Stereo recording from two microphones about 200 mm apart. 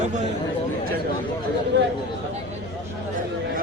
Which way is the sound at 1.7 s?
65° right (ahead or behind).